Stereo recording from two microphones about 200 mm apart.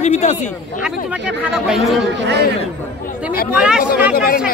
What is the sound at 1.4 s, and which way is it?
Speech, centre (ahead or behind).